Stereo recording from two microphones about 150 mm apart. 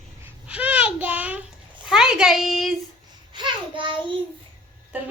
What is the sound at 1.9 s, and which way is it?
Speech, 5° right (ahead or behind).